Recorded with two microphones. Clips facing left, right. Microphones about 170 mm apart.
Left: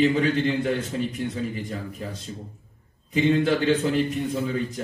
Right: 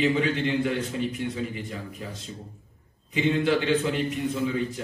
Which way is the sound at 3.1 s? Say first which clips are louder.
Left 3 dB; 40° left (ahead or behind).